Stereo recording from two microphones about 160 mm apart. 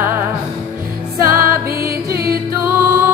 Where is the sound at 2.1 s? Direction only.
70° right (ahead or behind).